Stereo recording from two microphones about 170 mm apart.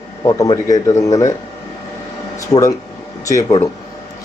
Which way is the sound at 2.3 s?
20° left (ahead or behind).